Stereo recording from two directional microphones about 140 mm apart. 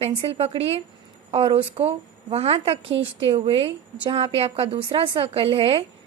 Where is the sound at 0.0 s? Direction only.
40° right (ahead or behind).